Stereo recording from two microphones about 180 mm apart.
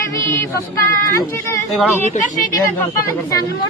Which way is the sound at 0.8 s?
15° left (ahead or behind).